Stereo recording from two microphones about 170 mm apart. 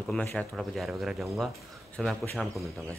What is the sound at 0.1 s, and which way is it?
Speech, 5° left (ahead or behind).